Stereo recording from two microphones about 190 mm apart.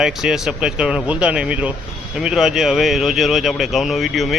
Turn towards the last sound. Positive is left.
turn(degrees=0)  # may be behind; listen again after turning